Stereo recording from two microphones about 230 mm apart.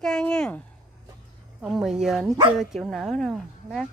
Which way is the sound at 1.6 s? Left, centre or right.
Centre.